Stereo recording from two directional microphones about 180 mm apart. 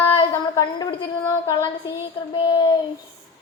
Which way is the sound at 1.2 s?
15° left (ahead or behind).